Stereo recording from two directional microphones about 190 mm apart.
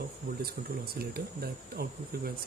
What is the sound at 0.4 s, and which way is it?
Speech, 55° right (ahead or behind).